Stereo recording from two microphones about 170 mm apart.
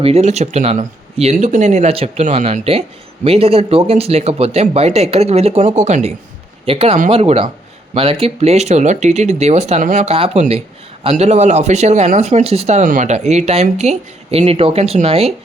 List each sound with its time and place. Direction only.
0.0 s speech: 40° right (ahead or behind)